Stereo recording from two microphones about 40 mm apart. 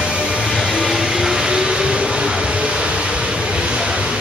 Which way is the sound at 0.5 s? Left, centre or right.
Centre.